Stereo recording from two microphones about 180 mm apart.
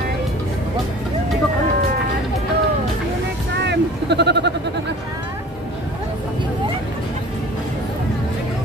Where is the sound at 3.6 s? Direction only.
70° right (ahead or behind).